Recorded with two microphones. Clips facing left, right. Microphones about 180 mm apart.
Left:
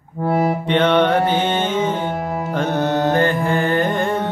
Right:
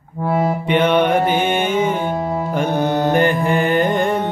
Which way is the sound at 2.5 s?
10° right (ahead or behind).